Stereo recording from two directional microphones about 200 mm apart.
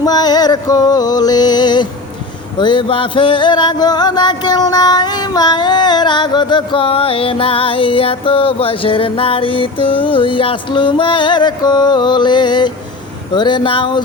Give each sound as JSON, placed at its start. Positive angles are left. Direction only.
{"t": 0.0, "sound": "music", "side_deg": 20}